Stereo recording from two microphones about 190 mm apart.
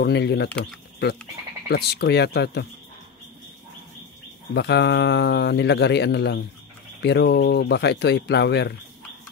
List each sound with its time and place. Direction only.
0.0 s speech: 60° left (ahead or behind)
0.5 s speech: 5° left (ahead or behind)
1.7 s speech: 55° left (ahead or behind)
4.6 s speech: 65° left (ahead or behind)